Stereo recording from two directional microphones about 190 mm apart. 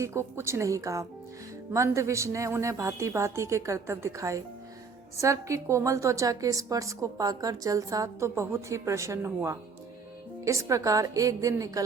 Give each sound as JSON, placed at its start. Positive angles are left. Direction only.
{"t": 0.0, "sound": "a woman's voice", "side_deg": -15}